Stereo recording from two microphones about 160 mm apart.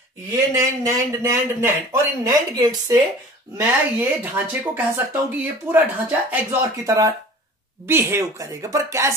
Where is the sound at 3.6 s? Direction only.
10° right (ahead or behind).